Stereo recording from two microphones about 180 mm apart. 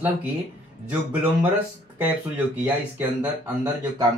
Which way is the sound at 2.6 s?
10° right (ahead or behind).